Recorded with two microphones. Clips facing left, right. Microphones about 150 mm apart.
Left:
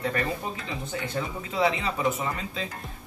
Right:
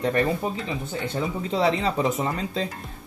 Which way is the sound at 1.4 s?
30° right (ahead or behind).